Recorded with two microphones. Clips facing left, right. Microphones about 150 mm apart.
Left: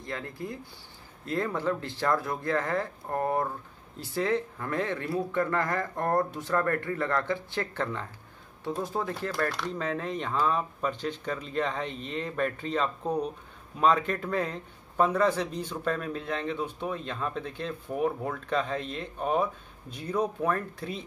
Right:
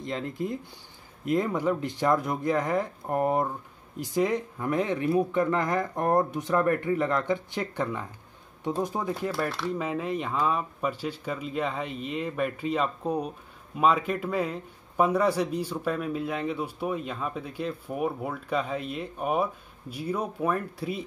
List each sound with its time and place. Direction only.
0.0 s speech: 20° right (ahead or behind)
9.3 s speech: 5° right (ahead or behind)